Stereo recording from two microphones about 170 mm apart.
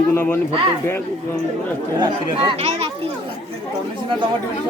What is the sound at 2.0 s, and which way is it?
Speech, 35° right (ahead or behind).